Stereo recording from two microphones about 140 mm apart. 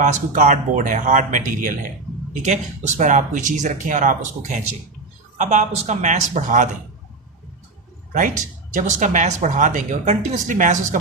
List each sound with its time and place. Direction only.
0.0 s speech: 65° right (ahead or behind)
2.3 s speech: 60° right (ahead or behind)
8.1 s speech: 65° right (ahead or behind)